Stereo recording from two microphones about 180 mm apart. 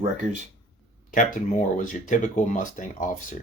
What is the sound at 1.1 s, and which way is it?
Speech, 45° left (ahead or behind).